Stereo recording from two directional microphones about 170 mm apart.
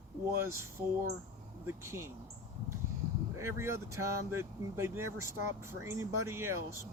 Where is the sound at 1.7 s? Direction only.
15° right (ahead or behind).